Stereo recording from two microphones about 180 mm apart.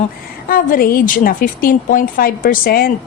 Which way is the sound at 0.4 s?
55° left (ahead or behind).